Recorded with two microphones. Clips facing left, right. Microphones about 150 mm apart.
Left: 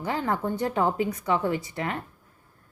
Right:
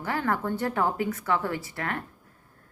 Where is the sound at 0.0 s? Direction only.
20° left (ahead or behind).